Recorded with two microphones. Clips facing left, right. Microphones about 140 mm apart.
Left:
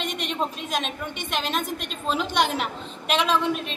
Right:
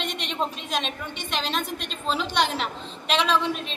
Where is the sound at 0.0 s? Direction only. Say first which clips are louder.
Left 1 dB; 50° left (ahead or behind).